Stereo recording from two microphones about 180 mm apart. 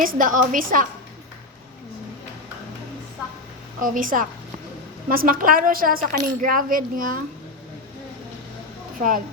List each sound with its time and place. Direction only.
0.0 s speech: 50° right (ahead or behind)
3.8 s speech: 50° right (ahead or behind)
9.0 s a woman's voice: 50° right (ahead or behind)